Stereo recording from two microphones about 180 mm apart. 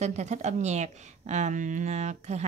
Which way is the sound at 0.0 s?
40° right (ahead or behind).